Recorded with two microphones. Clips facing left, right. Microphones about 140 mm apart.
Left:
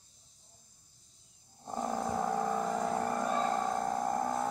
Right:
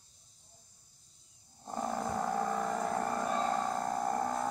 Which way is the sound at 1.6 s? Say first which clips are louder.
Left 1 dB; centre (ahead or behind).